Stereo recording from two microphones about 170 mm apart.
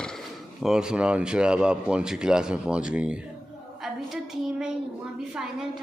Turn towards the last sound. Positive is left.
turn(degrees=0)  # may be behind; listen again after turning